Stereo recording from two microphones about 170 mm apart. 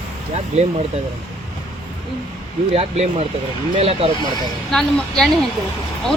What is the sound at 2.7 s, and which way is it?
Speech, 35° right (ahead or behind).